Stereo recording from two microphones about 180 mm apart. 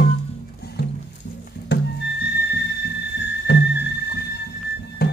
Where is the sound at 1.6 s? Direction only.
70° left (ahead or behind).